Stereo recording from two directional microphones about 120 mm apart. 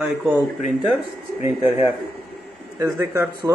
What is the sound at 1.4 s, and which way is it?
Speech, 20° right (ahead or behind).